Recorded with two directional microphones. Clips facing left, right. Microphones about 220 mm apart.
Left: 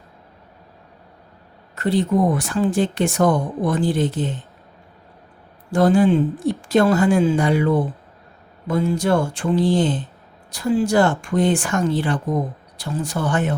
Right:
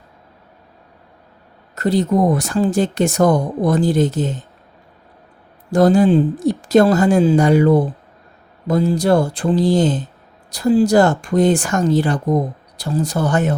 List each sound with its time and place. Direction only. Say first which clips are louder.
1.7 s speech: right 2 dB; 40° right (ahead or behind)
5.7 s speech: right 3 dB; 40° right (ahead or behind)